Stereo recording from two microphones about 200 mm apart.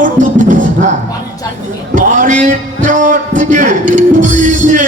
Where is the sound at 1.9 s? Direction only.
40° right (ahead or behind).